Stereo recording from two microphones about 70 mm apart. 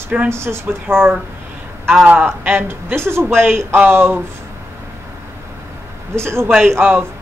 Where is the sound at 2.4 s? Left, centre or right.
Right.